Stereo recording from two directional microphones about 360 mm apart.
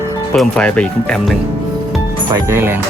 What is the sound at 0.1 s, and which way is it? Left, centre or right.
Speech, centre.